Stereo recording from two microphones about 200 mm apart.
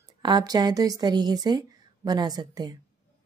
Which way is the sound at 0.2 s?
20° right (ahead or behind).